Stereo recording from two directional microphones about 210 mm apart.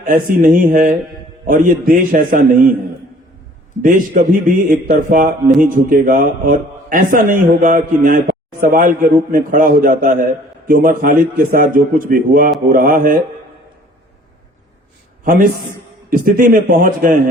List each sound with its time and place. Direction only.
0.1 s a man's voice: 40° right (ahead or behind)
3.8 s a man's voice: 40° right (ahead or behind)
4.9 s mantra: 45° right (ahead or behind)
5.6 s a man's voice: 40° right (ahead or behind)
12.7 s mantra: 40° right (ahead or behind)
15.2 s a man's voice: 45° right (ahead or behind)